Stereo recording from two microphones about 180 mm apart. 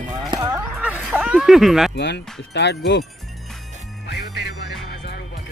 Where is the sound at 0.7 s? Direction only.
10° right (ahead or behind).